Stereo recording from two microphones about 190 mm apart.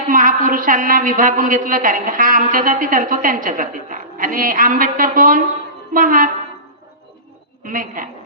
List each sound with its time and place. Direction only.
0.1 s a woman's voice: 45° right (ahead or behind)
7.6 s a woman's voice: 45° right (ahead or behind)